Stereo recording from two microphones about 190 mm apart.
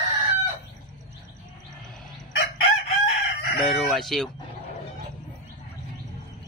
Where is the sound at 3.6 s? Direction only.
Centre (ahead or behind).